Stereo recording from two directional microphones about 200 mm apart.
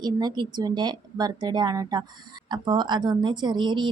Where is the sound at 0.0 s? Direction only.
20° right (ahead or behind).